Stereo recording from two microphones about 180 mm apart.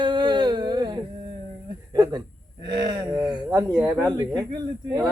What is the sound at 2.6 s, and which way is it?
Speech, 25° right (ahead or behind).